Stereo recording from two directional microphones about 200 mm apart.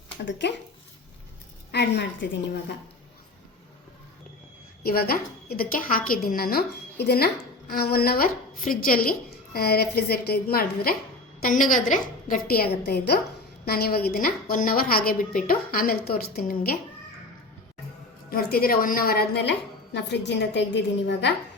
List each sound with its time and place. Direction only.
0.3 s a woman's voice: 60° left (ahead or behind)
1.7 s a woman's voice: 55° left (ahead or behind)
4.8 s a woman's voice: 50° left (ahead or behind)
18.3 s a woman's voice: 50° left (ahead or behind)